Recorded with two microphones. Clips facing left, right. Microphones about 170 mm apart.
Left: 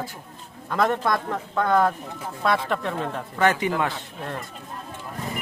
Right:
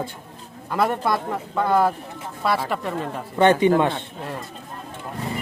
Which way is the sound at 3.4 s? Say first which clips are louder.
Right 6 dB; 30° right (ahead or behind).